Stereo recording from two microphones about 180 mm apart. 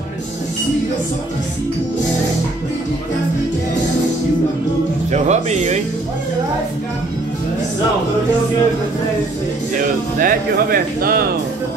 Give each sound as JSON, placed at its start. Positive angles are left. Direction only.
{"t": 5.1, "sound": "speech", "side_deg": -40}
{"t": 10.1, "sound": "speech", "side_deg": -50}